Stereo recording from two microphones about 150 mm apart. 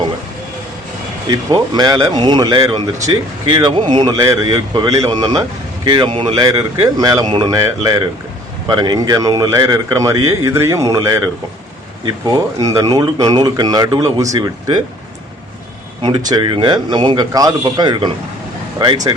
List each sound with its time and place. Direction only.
1.3 s speech: 25° right (ahead or behind)
16.0 s a man's voice: 30° right (ahead or behind)